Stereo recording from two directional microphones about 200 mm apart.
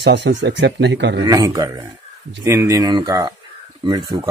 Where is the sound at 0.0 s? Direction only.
60° right (ahead or behind).